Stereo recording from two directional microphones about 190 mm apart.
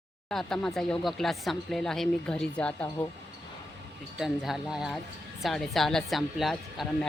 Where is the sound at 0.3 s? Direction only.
Centre (ahead or behind).